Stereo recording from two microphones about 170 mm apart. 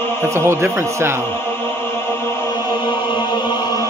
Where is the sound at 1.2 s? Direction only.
15° left (ahead or behind).